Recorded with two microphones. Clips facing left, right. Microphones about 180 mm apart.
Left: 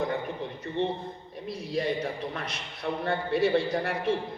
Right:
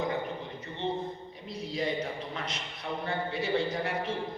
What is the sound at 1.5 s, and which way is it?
A man's voice, 65° left (ahead or behind).